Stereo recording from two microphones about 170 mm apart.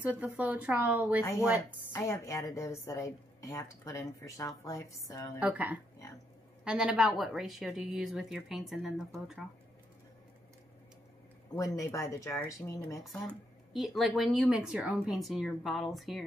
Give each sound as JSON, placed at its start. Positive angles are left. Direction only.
{"t": 0.0, "sound": "a woman's voice", "side_deg": -10}
{"t": 1.9, "sound": "a woman's voice", "side_deg": 15}
{"t": 5.4, "sound": "a woman's voice", "side_deg": -10}
{"t": 11.5, "sound": "a woman's voice", "side_deg": 20}
{"t": 13.0, "sound": "speech", "side_deg": 0}